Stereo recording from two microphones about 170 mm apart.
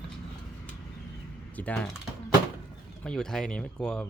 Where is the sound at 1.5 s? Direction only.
10° left (ahead or behind).